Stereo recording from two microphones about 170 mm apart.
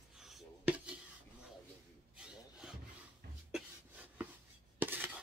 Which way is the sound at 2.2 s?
5° right (ahead or behind).